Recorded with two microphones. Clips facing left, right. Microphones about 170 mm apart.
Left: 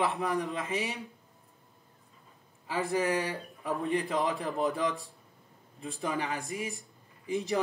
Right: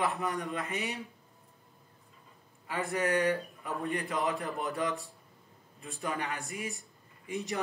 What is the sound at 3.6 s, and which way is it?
A man's voice, 30° left (ahead or behind).